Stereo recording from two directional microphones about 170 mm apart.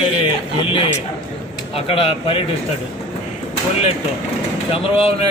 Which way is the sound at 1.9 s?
35° left (ahead or behind).